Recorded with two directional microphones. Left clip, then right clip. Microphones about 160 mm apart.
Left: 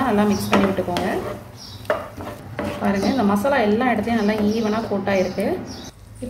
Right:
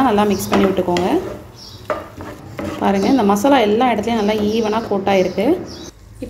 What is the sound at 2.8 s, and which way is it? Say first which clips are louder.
A woman's voice: right 6 dB; 45° right (ahead or behind).